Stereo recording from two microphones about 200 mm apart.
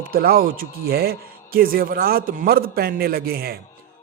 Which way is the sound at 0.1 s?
50° right (ahead or behind).